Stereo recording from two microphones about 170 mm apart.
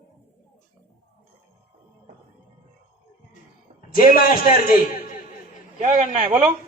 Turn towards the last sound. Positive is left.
turn(degrees=-35)  # may be behind; listen again after turning